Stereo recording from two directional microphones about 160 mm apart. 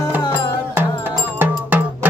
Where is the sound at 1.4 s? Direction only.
10° right (ahead or behind).